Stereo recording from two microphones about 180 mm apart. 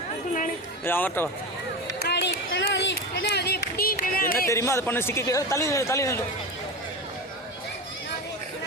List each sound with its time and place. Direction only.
0.9 s a man's voice: 10° left (ahead or behind)
2.0 s a sound: 65° left (ahead or behind)
4.4 s a man's voice: 15° left (ahead or behind)